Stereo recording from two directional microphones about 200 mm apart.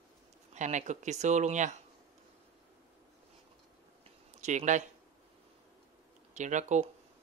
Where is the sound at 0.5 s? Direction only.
35° right (ahead or behind).